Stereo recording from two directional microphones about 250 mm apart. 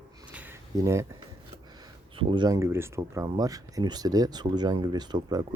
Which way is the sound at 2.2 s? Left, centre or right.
Centre.